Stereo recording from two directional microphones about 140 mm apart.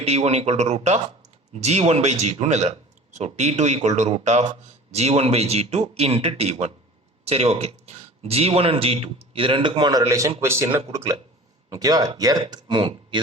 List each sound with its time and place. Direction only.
0.0 s speech: 50° right (ahead or behind)